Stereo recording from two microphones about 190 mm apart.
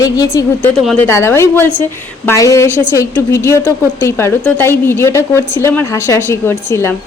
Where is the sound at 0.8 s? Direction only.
Centre (ahead or behind).